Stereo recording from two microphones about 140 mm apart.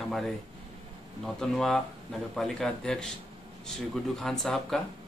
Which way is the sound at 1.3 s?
5° left (ahead or behind).